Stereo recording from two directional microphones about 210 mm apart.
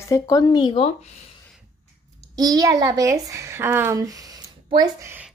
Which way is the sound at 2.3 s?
20° right (ahead or behind).